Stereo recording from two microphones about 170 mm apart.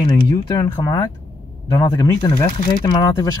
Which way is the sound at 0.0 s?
25° left (ahead or behind).